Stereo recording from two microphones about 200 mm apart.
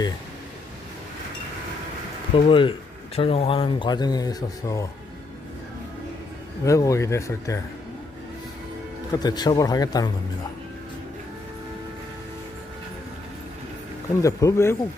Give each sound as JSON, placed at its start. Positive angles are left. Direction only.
{"t": 2.3, "sound": "speech", "side_deg": 25}
{"t": 6.7, "sound": "speech", "side_deg": 15}
{"t": 9.1, "sound": "speech", "side_deg": 20}
{"t": 14.2, "sound": "speech", "side_deg": 15}